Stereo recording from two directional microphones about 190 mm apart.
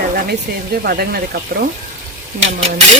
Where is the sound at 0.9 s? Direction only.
55° right (ahead or behind).